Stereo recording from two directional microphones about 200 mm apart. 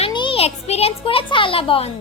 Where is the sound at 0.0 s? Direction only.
25° left (ahead or behind).